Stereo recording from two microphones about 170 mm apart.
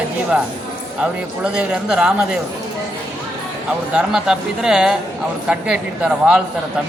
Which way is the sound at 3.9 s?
5° right (ahead or behind).